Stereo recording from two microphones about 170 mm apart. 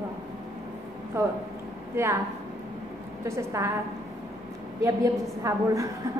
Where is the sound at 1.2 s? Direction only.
15° right (ahead or behind).